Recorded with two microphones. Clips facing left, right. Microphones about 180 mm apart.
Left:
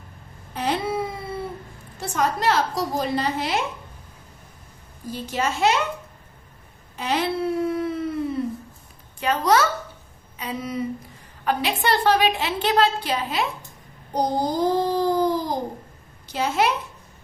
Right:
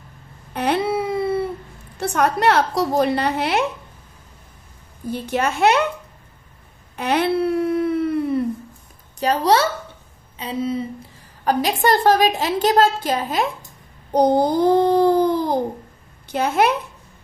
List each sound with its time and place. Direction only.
0.5 s cat: 65° right (ahead or behind)
2.0 s a woman's voice: 65° right (ahead or behind)
5.1 s a woman's voice: 60° right (ahead or behind)
7.0 s speech: 60° right (ahead or behind)
9.2 s a woman's voice: 35° right (ahead or behind)
11.4 s a woman's voice: 45° right (ahead or behind)
14.1 s a woman's voice: 60° right (ahead or behind)